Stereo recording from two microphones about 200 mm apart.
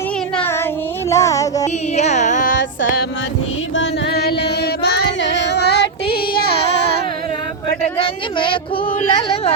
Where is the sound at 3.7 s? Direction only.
60° left (ahead or behind).